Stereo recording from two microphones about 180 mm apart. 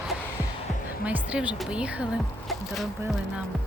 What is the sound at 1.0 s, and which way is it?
Speech, 5° right (ahead or behind).